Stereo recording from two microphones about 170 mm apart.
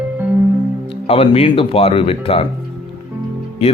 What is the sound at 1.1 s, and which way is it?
Speech, 35° left (ahead or behind).